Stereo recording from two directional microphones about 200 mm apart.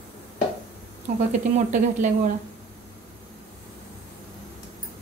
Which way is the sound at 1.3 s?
40° right (ahead or behind).